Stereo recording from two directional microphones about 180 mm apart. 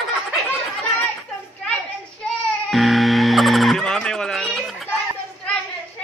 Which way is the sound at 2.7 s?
Centre (ahead or behind).